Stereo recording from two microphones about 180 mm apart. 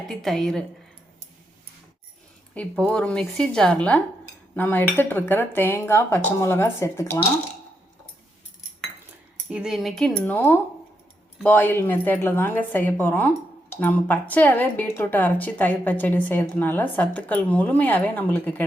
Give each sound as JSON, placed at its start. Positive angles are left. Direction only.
{"t": 0.1, "sound": "speech", "side_deg": 0}
{"t": 2.6, "sound": "a woman's voice", "side_deg": 5}
{"t": 9.5, "sound": "a woman's voice", "side_deg": -5}